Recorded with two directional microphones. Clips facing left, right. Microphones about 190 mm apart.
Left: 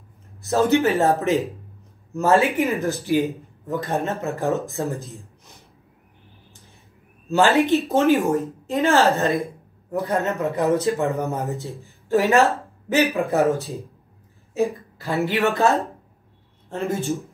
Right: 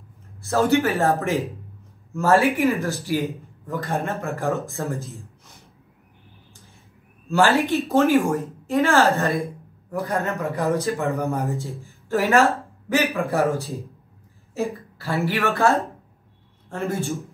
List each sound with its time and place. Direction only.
0.4 s a man's voice: 20° left (ahead or behind)
7.2 s a man's voice: 20° left (ahead or behind)
14.5 s a sound: 20° left (ahead or behind)
15.2 s a man's voice: 20° left (ahead or behind)